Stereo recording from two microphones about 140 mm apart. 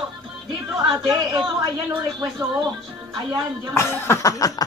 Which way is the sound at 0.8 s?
30° right (ahead or behind).